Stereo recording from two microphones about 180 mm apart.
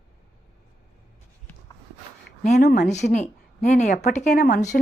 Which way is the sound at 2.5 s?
60° left (ahead or behind).